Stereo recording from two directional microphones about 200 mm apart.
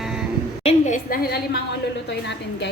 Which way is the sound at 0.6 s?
35° left (ahead or behind).